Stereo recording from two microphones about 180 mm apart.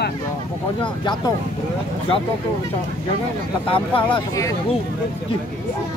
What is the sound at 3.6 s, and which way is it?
Speech, 30° left (ahead or behind).